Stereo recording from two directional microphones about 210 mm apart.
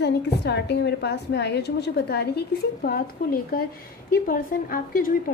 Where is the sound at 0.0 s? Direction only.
55° left (ahead or behind).